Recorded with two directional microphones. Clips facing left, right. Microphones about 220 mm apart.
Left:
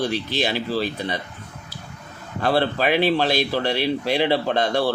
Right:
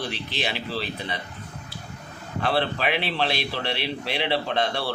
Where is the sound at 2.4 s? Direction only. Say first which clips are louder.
Left 5 dB; 40° left (ahead or behind).